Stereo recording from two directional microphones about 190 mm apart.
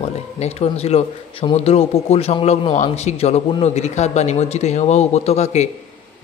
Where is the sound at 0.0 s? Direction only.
35° left (ahead or behind).